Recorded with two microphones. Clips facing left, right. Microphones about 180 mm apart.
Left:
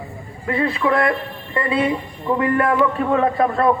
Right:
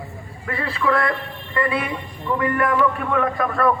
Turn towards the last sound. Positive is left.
turn(degrees=25)  # may be behind; listen again after turning